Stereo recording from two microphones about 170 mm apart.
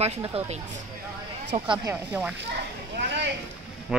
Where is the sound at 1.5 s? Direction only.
45° right (ahead or behind).